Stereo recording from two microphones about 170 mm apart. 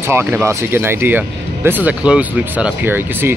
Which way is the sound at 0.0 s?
15° right (ahead or behind).